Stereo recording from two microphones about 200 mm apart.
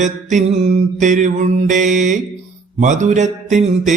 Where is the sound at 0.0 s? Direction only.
35° right (ahead or behind).